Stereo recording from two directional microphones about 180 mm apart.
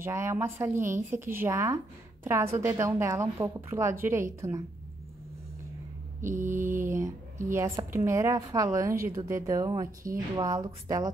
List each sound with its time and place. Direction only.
0.0 s a woman's voice: 15° right (ahead or behind)
6.2 s a sound: 45° right (ahead or behind)
6.9 s a woman's voice: 15° right (ahead or behind)